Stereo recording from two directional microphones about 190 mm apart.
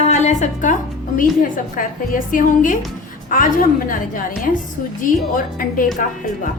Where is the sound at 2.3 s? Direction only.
45° left (ahead or behind).